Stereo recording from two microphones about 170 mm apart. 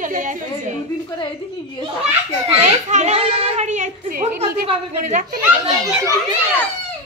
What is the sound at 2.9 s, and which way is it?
A woman's voice, 40° right (ahead or behind).